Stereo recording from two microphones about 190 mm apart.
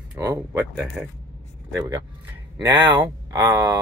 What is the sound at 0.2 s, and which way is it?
Speech, 15° right (ahead or behind).